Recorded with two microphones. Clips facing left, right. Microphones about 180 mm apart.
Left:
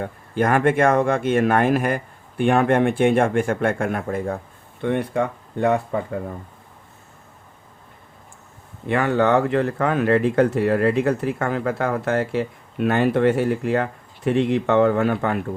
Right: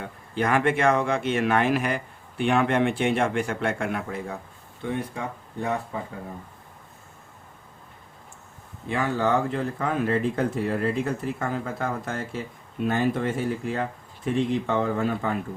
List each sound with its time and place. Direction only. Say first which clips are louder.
0.0 s speech: left 5 dB; 50° left (ahead or behind)
4.8 s speech: left 8 dB; 65° left (ahead or behind)
8.9 s speech: left 6 dB; 65° left (ahead or behind)